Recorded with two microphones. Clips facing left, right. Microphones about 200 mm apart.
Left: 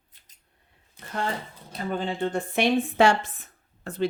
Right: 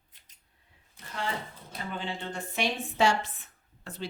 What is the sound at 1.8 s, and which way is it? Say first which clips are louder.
Speech: left 9 dB; 45° left (ahead or behind).